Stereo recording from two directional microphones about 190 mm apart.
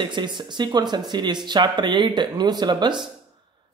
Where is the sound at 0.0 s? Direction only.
25° right (ahead or behind).